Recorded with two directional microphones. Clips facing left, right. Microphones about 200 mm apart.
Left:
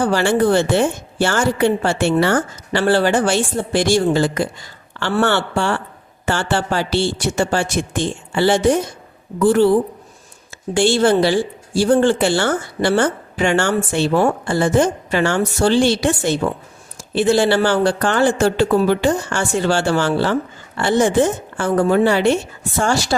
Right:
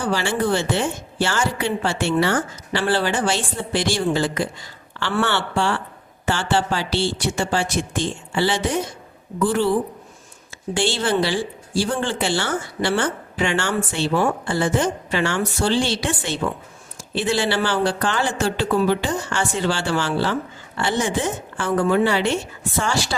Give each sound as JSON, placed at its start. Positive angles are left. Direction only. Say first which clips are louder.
{"t": 0.0, "sound": "speech", "louder": "left 6 dB", "side_deg": 55}
{"t": 10.8, "sound": "speech", "louder": "left 7 dB", "side_deg": 45}